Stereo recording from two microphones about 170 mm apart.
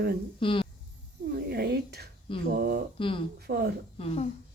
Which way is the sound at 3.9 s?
35° left (ahead or behind).